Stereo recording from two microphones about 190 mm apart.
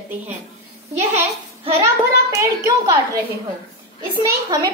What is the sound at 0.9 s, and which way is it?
Speech, 35° right (ahead or behind).